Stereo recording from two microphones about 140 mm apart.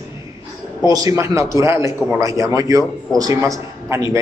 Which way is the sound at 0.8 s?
25° right (ahead or behind).